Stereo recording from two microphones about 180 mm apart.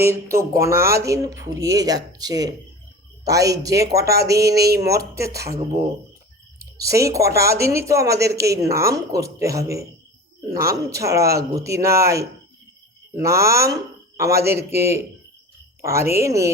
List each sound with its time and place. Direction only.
0.0 s speech: 15° right (ahead or behind)
4.5 s speech: 60° right (ahead or behind)
4.8 s speech: 20° right (ahead or behind)
6.6 s speech: 20° right (ahead or behind)